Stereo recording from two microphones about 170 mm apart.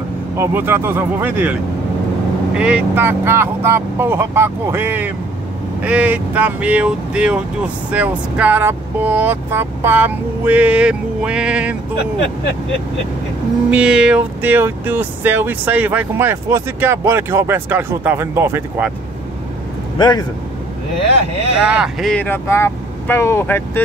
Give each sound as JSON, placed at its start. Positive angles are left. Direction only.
{"t": 0.4, "sound": "speech", "side_deg": -15}
{"t": 13.7, "sound": "speech", "side_deg": -5}
{"t": 20.0, "sound": "speech", "side_deg": 25}
{"t": 21.6, "sound": "speech", "side_deg": -5}